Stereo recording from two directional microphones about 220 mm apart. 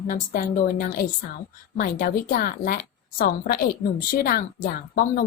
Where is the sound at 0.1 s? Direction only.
40° left (ahead or behind).